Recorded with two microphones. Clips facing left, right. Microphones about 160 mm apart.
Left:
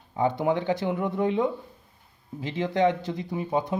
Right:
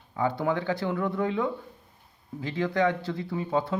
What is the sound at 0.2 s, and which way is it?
Speech, 20° left (ahead or behind).